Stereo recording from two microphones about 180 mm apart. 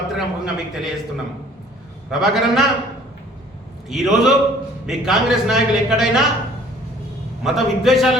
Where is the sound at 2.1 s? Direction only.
Centre (ahead or behind).